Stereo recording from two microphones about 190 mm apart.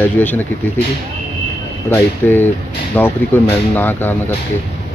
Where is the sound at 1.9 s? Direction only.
10° left (ahead or behind).